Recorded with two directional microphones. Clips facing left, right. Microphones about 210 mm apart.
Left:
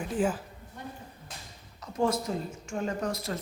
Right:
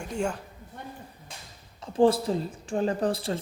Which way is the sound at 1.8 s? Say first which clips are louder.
Right 7 dB; 30° right (ahead or behind).